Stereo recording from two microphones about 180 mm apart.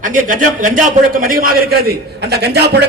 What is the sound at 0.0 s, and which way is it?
A man's voice, 45° right (ahead or behind).